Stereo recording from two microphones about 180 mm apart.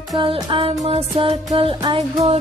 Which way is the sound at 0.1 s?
30° right (ahead or behind).